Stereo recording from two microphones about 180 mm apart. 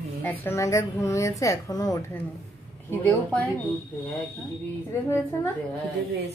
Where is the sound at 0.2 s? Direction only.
10° left (ahead or behind).